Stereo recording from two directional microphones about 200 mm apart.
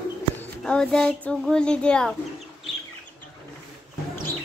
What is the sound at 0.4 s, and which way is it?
Speech, 5° left (ahead or behind).